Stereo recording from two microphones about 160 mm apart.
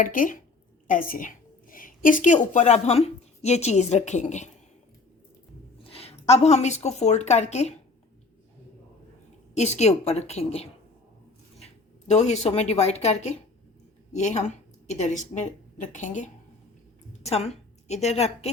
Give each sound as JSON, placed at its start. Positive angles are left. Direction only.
{"t": 0.0, "sound": "a woman's voice", "side_deg": 55}
{"t": 5.8, "sound": "a woman's voice", "side_deg": 40}
{"t": 9.6, "sound": "a woman's voice", "side_deg": 45}